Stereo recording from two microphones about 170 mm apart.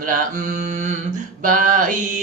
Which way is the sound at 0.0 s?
55° right (ahead or behind).